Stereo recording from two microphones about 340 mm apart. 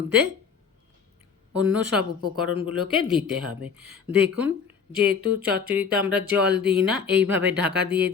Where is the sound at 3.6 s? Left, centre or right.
Centre.